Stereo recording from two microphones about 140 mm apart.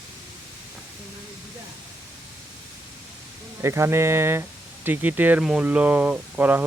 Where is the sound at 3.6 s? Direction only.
20° right (ahead or behind).